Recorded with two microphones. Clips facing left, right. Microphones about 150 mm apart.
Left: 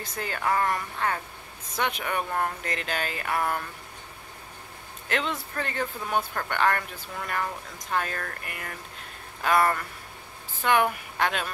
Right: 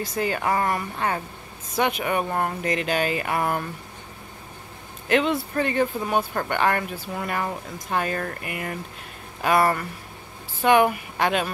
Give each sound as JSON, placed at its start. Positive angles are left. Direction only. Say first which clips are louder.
{"t": 0.0, "sound": "speech", "louder": "right 6 dB", "side_deg": -10}
{"t": 5.0, "sound": "a man's voice", "louder": "right 8 dB", "side_deg": -15}